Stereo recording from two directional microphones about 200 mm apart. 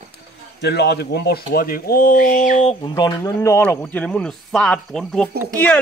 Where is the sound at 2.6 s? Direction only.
20° left (ahead or behind); by 5.3 s 5° left (ahead or behind).